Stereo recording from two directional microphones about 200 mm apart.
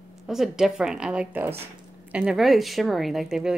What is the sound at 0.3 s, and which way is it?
Speech, centre (ahead or behind).